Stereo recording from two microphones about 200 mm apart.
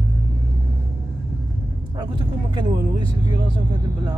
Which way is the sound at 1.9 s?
20° right (ahead or behind).